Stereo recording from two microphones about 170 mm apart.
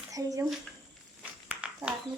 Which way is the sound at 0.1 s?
20° right (ahead or behind).